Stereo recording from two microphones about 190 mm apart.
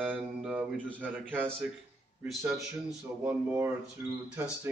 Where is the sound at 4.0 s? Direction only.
15° right (ahead or behind).